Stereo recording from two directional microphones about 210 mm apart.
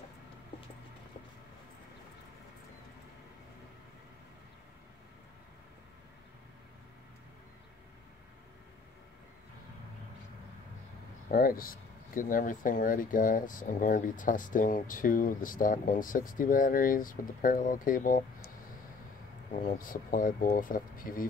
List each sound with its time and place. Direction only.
11.2 s speech: 45° left (ahead or behind)
19.5 s speech: 40° left (ahead or behind)